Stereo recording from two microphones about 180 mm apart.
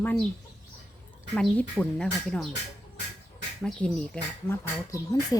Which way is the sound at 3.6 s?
Centre (ahead or behind).